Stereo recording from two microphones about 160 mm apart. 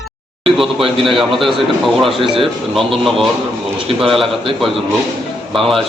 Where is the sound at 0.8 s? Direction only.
35° right (ahead or behind).